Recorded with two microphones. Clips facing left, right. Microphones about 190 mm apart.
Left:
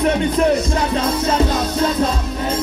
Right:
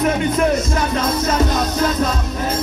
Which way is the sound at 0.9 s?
30° left (ahead or behind).